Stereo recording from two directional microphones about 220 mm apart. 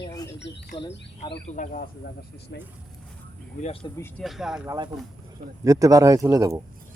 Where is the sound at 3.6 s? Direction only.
25° left (ahead or behind).